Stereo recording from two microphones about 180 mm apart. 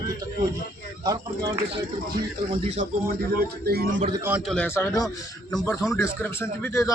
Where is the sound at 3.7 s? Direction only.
60° right (ahead or behind).